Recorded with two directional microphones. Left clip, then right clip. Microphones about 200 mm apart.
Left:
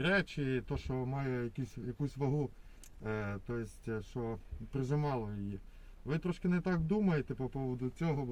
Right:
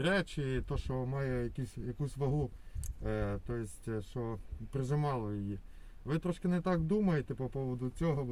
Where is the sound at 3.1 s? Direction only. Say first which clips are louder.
Right 2 dB; 20° right (ahead or behind).